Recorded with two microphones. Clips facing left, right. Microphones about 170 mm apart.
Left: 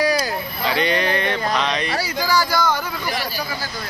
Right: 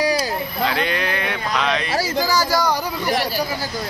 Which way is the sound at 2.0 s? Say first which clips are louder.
Right 1 dB; 40° right (ahead or behind).